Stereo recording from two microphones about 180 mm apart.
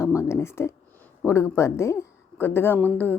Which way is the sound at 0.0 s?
15° left (ahead or behind).